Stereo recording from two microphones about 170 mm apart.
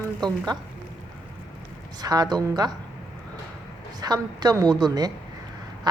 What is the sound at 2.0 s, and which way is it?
Speech, 20° right (ahead or behind).